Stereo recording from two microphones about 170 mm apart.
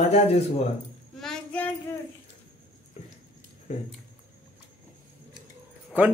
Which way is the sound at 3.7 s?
40° left (ahead or behind).